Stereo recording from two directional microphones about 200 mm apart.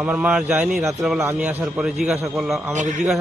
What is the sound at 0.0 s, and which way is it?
A man's voice, 5° right (ahead or behind).